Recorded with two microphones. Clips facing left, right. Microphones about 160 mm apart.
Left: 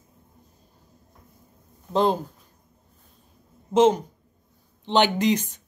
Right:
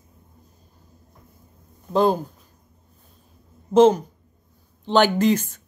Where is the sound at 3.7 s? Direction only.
20° left (ahead or behind).